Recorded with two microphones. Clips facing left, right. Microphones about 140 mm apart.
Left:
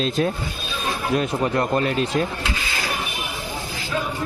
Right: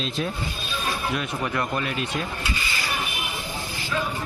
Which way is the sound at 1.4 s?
35° left (ahead or behind).